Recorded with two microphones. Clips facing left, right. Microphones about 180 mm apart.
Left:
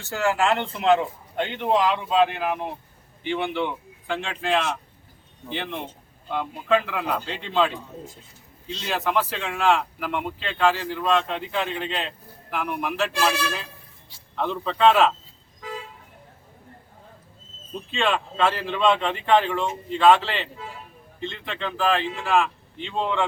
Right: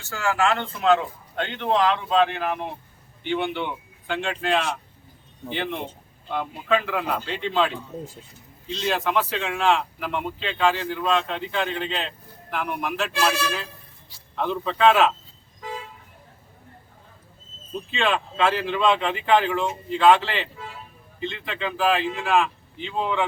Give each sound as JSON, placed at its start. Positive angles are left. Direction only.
{"t": 0.4, "sound": "speech", "side_deg": 15}
{"t": 17.9, "sound": "speech", "side_deg": 0}